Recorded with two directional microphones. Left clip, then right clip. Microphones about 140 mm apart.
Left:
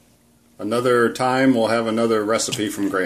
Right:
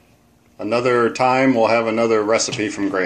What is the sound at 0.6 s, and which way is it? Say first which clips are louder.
Speech: right 1 dB; 40° left (ahead or behind).